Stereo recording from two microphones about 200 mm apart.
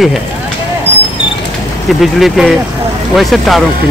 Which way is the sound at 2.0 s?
Centre (ahead or behind).